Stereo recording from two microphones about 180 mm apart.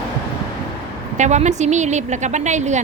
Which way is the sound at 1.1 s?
40° right (ahead or behind).